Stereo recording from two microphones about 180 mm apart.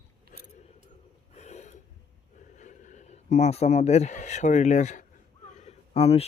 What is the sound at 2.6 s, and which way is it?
Speech, 40° left (ahead or behind).